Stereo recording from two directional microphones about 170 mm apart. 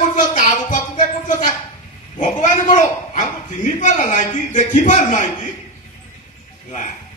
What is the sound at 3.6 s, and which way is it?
A woman's voice, 45° left (ahead or behind).